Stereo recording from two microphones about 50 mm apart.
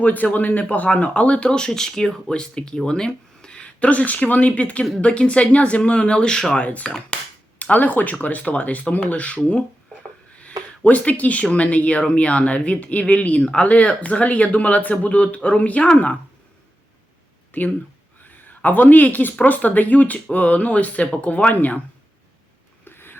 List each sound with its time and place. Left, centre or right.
0.0 s speech: left; by 3.6 s centre
3.6 s speech: left
6.6 s speech: left
10.4 s a sound: left
11.5 s speech: left
17.5 s a man's voice: left
22.8 s a sound: left